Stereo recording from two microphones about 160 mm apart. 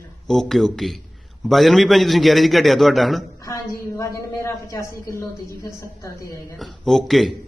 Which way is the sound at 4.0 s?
20° left (ahead or behind).